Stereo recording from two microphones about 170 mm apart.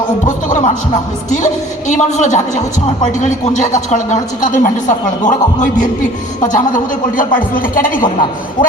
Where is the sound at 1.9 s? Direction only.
45° left (ahead or behind).